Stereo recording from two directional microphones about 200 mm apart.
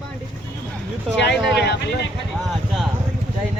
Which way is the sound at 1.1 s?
60° left (ahead or behind).